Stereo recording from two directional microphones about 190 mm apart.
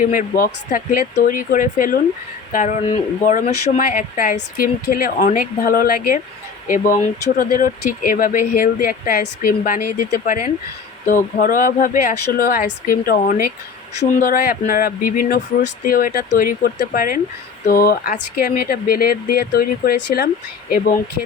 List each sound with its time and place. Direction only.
0.0 s speech: 45° left (ahead or behind)
11.0 s speech: 45° left (ahead or behind)